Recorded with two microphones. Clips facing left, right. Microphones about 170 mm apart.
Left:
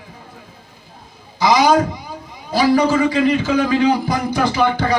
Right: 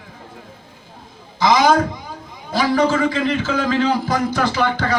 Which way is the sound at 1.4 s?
10° left (ahead or behind).